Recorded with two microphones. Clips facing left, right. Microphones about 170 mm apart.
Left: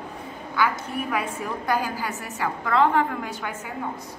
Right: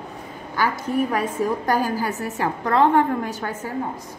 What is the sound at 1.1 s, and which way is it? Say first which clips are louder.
A woman's voice: right 5 dB; 35° right (ahead or behind).